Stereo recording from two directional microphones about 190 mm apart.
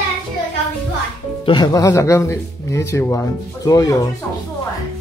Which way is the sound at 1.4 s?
20° left (ahead or behind).